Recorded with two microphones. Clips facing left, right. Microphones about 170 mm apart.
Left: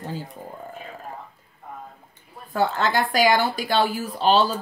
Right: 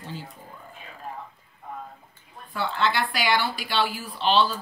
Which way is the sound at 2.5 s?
40° left (ahead or behind).